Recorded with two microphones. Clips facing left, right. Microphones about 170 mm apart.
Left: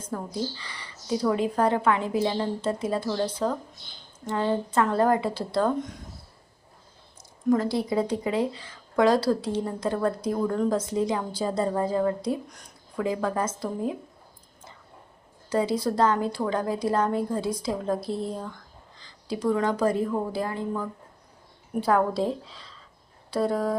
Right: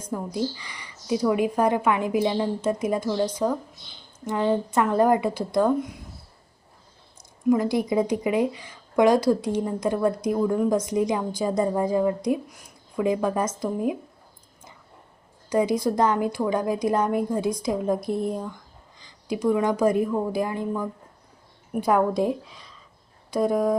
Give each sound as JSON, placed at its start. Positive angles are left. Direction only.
{"t": 0.0, "sound": "speech", "side_deg": -15}
{"t": 7.5, "sound": "speech", "side_deg": -15}
{"t": 15.4, "sound": "a woman's voice", "side_deg": -15}